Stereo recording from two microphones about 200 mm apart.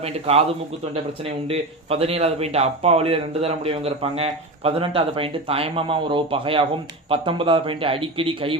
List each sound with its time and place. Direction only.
0.0 s a man's voice: 30° right (ahead or behind)